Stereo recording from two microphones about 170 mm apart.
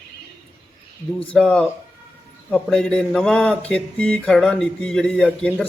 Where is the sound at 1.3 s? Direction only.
5° left (ahead or behind).